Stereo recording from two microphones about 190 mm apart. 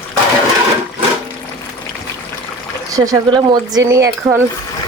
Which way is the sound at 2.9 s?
20° right (ahead or behind).